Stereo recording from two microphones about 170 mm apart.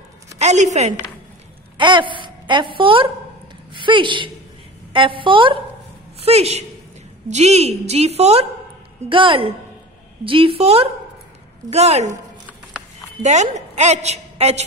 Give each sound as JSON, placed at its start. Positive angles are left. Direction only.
{"t": 0.4, "sound": "a woman's voice", "side_deg": -40}
{"t": 1.8, "sound": "a woman's voice", "side_deg": -30}
{"t": 13.2, "sound": "a woman's voice", "side_deg": -40}